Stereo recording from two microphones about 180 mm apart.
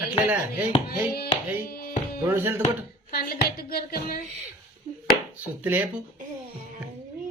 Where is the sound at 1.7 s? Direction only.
55° left (ahead or behind).